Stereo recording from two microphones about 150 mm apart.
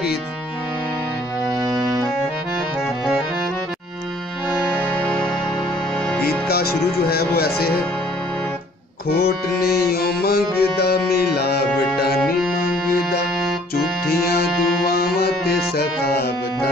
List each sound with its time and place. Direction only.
4.6 s music: 10° left (ahead or behind)
6.4 s speech: 90° left
9.1 s music: 90° left
12.2 s music: centre (ahead or behind)
14.9 s music: 90° left